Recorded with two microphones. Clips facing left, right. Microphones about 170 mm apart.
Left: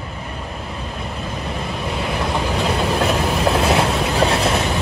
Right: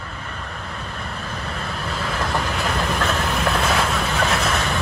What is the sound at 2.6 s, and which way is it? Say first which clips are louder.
Train: left 4 dB; 20° left (ahead or behind).